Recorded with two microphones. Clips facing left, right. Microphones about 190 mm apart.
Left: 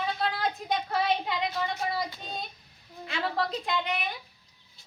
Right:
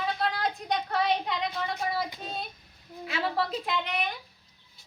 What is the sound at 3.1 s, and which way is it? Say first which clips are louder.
A woman's voice: right 1 dB; 5° right (ahead or behind).